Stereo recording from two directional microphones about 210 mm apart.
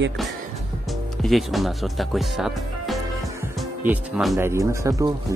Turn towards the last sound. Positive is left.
turn(degrees=-15)  # may be behind; listen again after turning